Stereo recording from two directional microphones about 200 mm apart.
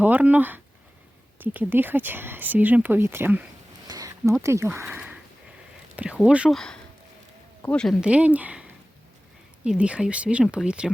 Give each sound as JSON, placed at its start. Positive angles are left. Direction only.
{"t": 0.0, "sound": "speech", "side_deg": -10}
{"t": 3.8, "sound": "a sound", "side_deg": -15}
{"t": 4.4, "sound": "speech", "side_deg": -15}
{"t": 9.6, "sound": "speech", "side_deg": -5}